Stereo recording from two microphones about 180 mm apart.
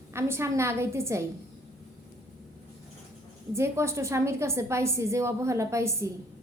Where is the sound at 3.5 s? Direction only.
15° right (ahead or behind).